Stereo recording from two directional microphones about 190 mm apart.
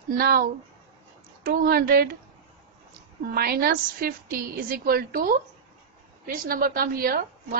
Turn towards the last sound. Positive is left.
turn(degrees=-50)  # may be behind; listen again after turning